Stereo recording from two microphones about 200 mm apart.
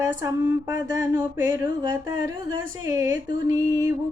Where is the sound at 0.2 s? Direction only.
15° right (ahead or behind).